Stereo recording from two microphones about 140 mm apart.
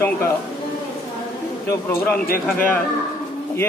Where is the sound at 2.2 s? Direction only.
90° left.